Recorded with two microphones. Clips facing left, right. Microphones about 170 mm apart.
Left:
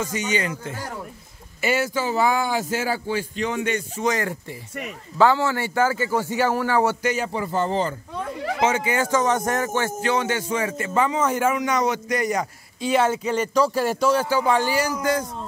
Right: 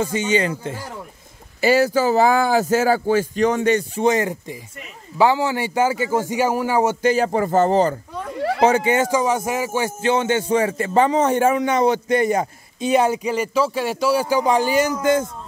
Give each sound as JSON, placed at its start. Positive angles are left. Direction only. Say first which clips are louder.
{"t": 0.0, "sound": "a man's voice", "louder": "right 5 dB", "side_deg": -30}
{"t": 7.1, "sound": "speech", "louder": "right 7 dB", "side_deg": -40}
{"t": 8.9, "sound": "a man's voice", "louder": "right 2 dB", "side_deg": -15}
{"t": 10.1, "sound": "a man's voice", "louder": "right 5 dB", "side_deg": -25}
{"t": 13.3, "sound": "a man's voice", "louder": "even", "side_deg": -5}